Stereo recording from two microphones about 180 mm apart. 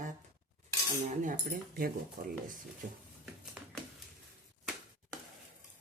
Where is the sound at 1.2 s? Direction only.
50° right (ahead or behind).